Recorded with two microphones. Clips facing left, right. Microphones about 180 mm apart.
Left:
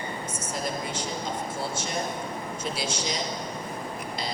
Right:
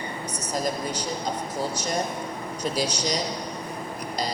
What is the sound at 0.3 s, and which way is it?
A woman's voice, 40° right (ahead or behind).